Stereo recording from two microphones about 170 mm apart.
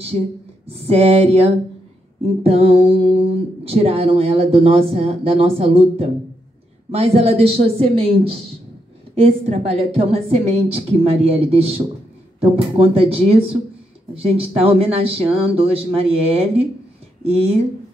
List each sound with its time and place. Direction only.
0.7 s speech: 35° right (ahead or behind)